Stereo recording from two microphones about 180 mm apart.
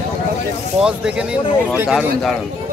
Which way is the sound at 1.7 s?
5° right (ahead or behind).